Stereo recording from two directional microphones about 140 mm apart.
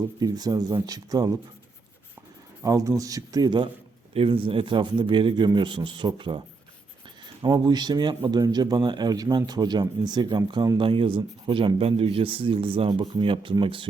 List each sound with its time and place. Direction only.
0.2 s speech: 25° right (ahead or behind)
2.6 s speech: 25° right (ahead or behind)
4.1 s speech: 40° right (ahead or behind)
7.4 s speech: 30° right (ahead or behind)